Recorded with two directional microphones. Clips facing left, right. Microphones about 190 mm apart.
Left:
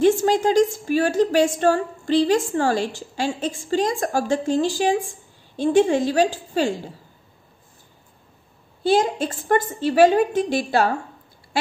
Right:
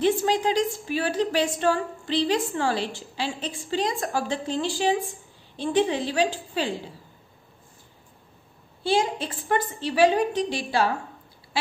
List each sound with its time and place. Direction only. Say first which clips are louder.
0.0 s a woman's voice: left 5 dB; 45° left (ahead or behind)
8.8 s a woman's voice: left 5 dB; 45° left (ahead or behind)